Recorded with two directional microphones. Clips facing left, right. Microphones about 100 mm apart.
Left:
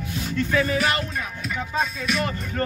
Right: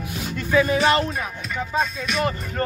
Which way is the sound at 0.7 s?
30° right (ahead or behind).